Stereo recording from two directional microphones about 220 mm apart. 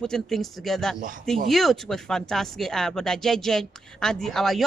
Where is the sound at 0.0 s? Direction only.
Centre (ahead or behind).